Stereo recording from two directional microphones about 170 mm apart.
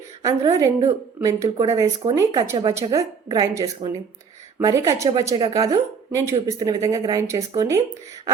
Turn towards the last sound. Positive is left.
turn(degrees=-20)  # may be behind; listen again after turning